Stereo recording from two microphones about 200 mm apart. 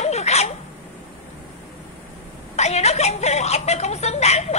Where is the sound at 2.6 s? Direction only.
30° left (ahead or behind).